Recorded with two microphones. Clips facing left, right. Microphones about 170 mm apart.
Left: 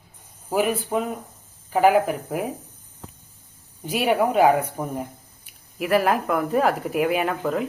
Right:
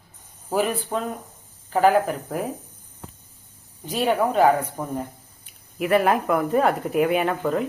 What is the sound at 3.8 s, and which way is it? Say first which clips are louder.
Speech: left 1 dB; 10° left (ahead or behind).